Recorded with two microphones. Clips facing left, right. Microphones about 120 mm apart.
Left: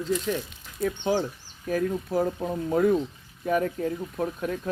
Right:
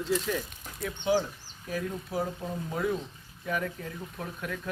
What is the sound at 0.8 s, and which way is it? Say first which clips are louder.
Speech: left 2 dB; 40° left (ahead or behind).